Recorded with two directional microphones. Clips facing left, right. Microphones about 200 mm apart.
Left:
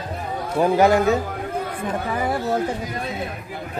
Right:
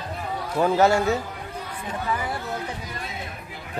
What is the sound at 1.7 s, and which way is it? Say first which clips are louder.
Speech: left 4 dB; 50° left (ahead or behind).